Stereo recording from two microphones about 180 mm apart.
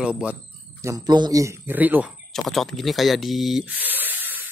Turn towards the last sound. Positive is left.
turn(degrees=-10)  # may be behind; listen again after turning